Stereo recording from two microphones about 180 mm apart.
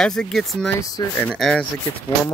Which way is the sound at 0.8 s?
20° left (ahead or behind).